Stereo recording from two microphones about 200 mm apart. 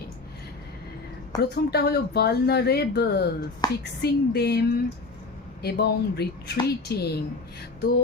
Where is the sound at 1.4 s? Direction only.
55° left (ahead or behind).